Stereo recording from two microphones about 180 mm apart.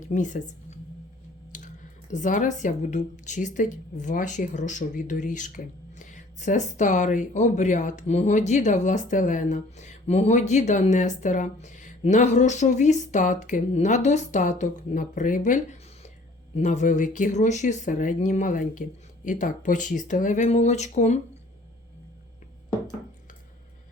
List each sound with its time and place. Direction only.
0.1 s a woman's voice: 45° left (ahead or behind)
2.1 s speech: 45° left (ahead or behind)